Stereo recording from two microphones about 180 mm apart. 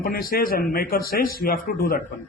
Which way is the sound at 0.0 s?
55° left (ahead or behind).